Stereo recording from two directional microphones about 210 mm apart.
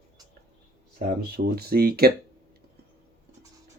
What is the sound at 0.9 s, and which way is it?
Speech, 45° right (ahead or behind).